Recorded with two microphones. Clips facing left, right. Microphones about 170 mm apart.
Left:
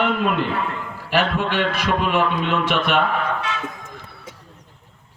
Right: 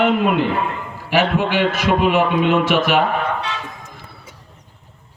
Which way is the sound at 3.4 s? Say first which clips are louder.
Right 1 dB; 30° right (ahead or behind).